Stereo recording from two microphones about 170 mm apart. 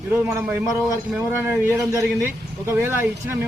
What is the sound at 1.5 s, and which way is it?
A man's voice, 15° right (ahead or behind).